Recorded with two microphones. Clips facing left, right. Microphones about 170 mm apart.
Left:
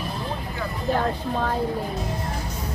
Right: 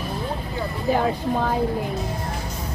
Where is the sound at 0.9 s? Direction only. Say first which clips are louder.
Right 3 dB; 5° right (ahead or behind).